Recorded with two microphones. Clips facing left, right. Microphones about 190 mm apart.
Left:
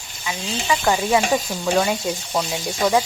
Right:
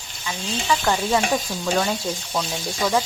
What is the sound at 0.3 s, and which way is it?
Speech, 10° left (ahead or behind).